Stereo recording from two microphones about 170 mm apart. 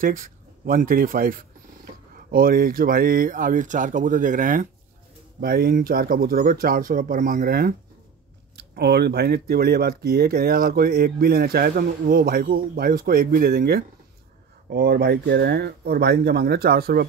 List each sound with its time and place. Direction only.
0.0 s speech: 55° right (ahead or behind)
8.5 s speech: 75° right (ahead or behind)